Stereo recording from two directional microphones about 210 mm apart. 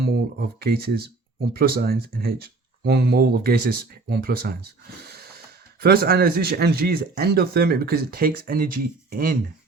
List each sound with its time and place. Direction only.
0.0 s speech: 45° right (ahead or behind)
5.0 s a sound: 50° right (ahead or behind)
5.8 s speech: 45° right (ahead or behind)